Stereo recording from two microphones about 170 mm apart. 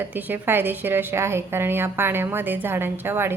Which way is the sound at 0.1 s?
10° right (ahead or behind).